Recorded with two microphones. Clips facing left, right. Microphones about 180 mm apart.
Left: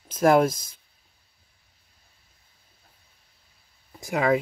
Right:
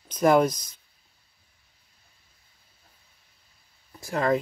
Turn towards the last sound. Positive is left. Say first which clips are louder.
# left 2 dB
turn(degrees=10)  # may be behind; listen again after turning